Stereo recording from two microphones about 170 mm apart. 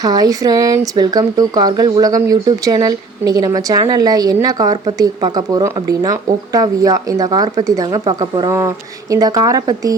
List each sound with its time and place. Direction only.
0.0 s speech: 25° right (ahead or behind)